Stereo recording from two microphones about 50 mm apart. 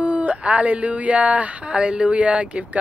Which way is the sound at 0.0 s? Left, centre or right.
Right.